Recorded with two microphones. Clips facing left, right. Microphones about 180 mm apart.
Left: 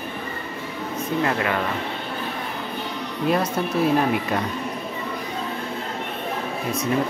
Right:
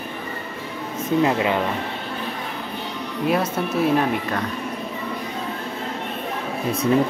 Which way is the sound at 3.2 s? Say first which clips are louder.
Even; 5° right (ahead or behind).